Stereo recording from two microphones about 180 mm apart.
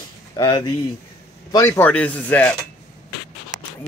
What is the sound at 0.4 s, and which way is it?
Speech, 25° left (ahead or behind).